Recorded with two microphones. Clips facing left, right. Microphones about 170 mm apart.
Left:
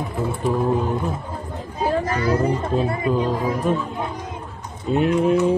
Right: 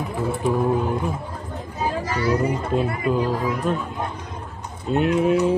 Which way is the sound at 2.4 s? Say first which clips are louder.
Left 1 dB; 5° right (ahead or behind).